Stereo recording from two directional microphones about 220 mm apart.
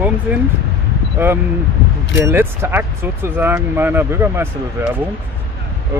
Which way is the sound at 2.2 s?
10° right (ahead or behind).